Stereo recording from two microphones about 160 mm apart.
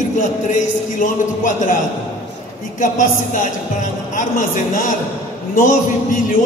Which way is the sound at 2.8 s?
55° left (ahead or behind).